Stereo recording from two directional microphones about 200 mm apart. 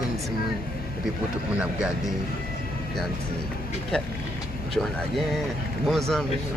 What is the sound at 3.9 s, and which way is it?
Speech, 5° left (ahead or behind).